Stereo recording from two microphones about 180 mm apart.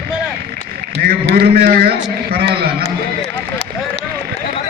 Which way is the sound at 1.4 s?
55° right (ahead or behind).